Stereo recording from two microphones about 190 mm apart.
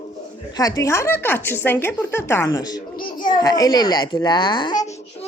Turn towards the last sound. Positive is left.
turn(degrees=20)  # may be behind; listen again after turning